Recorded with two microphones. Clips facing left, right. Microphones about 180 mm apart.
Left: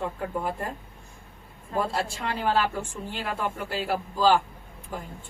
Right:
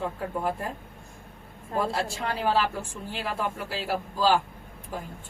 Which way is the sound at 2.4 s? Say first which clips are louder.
Left 1 dB; centre (ahead or behind).